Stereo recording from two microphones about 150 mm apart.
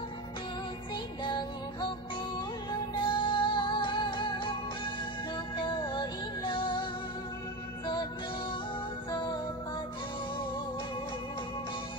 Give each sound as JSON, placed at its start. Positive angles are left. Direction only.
{"t": 1.2, "sound": "music", "side_deg": 30}
{"t": 2.9, "sound": "music", "side_deg": 35}